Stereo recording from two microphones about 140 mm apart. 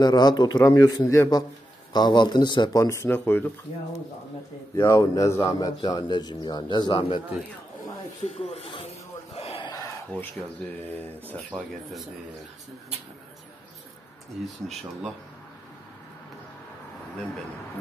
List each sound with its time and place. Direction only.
0.0 s speech: 30° left (ahead or behind); by 3.5 s 15° left (ahead or behind)
4.7 s speech: 15° left (ahead or behind); by 7.2 s 35° left (ahead or behind)
8.2 s speech: 50° left (ahead or behind)
9.3 s a sound: 45° left (ahead or behind)
10.1 s speech: 15° left (ahead or behind)
11.5 s speech: centre (ahead or behind)
14.7 s speech: centre (ahead or behind)